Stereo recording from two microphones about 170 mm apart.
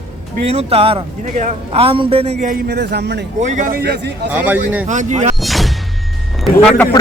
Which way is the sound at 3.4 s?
45° right (ahead or behind).